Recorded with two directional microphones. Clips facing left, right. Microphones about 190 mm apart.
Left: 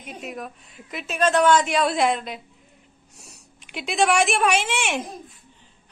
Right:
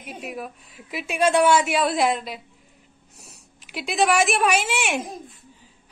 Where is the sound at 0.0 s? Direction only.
5° right (ahead or behind).